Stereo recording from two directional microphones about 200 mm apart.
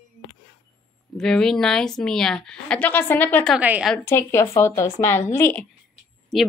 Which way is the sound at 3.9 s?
10° left (ahead or behind).